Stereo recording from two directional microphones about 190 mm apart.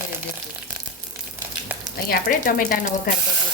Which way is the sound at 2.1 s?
50° left (ahead or behind).